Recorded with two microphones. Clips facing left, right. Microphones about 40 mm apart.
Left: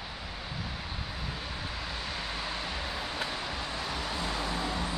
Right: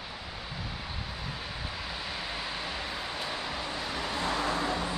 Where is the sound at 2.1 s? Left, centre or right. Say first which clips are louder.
Even; centre.